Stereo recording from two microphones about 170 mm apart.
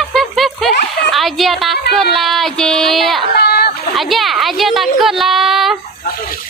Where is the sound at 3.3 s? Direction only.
70° left (ahead or behind).